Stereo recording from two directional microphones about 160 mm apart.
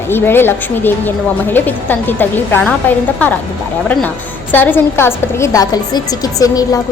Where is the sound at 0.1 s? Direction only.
15° left (ahead or behind).